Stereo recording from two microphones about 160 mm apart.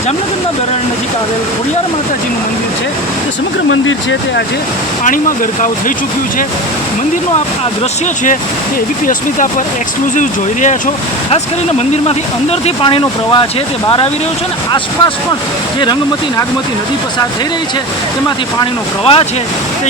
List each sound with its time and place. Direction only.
10.2 s speech: 50° left (ahead or behind)
12.0 s speech: 40° left (ahead or behind)
18.6 s speech: 35° left (ahead or behind)